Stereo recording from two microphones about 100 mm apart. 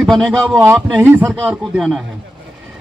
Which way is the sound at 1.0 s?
15° right (ahead or behind).